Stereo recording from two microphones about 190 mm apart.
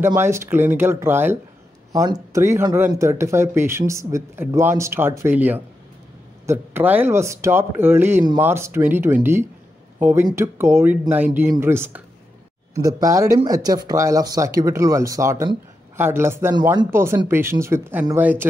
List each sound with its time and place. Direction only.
0.0 s speech: 15° right (ahead or behind)